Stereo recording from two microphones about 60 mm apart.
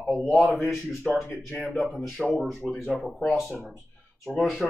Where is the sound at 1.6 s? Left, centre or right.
Centre.